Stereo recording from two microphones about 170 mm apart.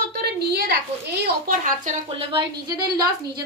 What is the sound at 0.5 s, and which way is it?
Speech, 75° right (ahead or behind).